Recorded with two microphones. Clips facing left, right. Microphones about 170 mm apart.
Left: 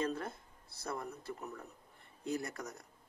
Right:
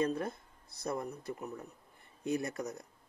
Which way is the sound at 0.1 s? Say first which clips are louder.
Right 4 dB; 20° right (ahead or behind).